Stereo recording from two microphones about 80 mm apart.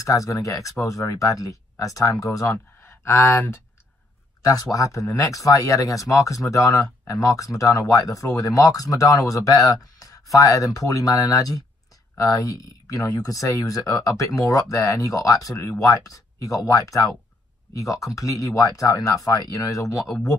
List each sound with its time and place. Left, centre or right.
0.0 s speech: left
2.8 s speech: left
4.4 s speech: left